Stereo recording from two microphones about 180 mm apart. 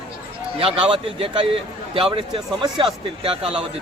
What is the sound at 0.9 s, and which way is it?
Speech, 30° right (ahead or behind).